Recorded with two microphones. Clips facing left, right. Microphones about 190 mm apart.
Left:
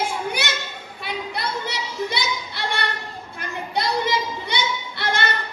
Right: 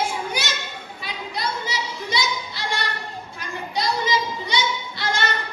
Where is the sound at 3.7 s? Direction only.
60° left (ahead or behind).